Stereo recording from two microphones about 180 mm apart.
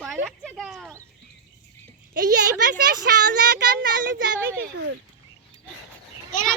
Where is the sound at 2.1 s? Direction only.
60° right (ahead or behind).